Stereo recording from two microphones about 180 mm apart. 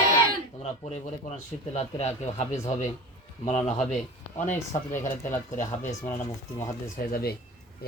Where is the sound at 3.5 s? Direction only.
40° left (ahead or behind).